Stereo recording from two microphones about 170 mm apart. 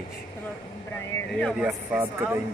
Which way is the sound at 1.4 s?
Centre (ahead or behind).